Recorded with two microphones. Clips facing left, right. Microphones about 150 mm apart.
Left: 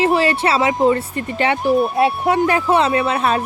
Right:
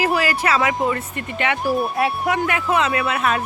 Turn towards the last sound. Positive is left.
turn(degrees=30)  # may be behind; listen again after turning